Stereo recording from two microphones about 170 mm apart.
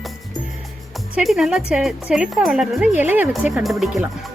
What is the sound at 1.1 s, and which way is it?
Speech, centre (ahead or behind).